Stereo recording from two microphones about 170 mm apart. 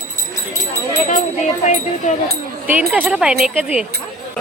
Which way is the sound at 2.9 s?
5° right (ahead or behind).